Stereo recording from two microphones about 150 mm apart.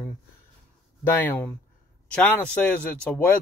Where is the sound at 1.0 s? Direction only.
15° left (ahead or behind).